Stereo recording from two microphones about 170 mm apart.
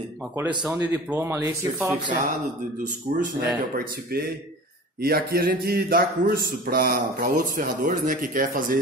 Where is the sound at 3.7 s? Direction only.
65° right (ahead or behind).